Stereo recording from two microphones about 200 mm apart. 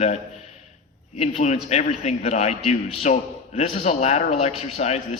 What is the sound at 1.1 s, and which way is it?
A man's voice, 30° left (ahead or behind).